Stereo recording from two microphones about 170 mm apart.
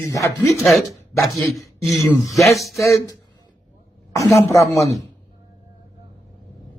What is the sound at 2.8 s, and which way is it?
Speech, 15° left (ahead or behind).